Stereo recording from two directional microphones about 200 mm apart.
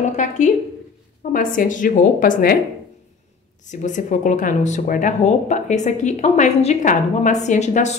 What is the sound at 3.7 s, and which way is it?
Speech, 40° left (ahead or behind).